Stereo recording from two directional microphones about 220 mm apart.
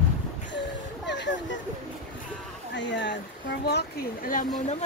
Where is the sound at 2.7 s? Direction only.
55° left (ahead or behind).